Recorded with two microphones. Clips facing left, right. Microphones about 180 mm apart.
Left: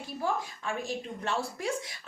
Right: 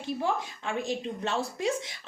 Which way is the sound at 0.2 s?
25° right (ahead or behind).